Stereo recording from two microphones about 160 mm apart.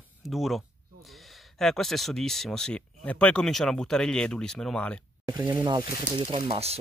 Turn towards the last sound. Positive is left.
turn(degrees=-40)  # may be behind; listen again after turning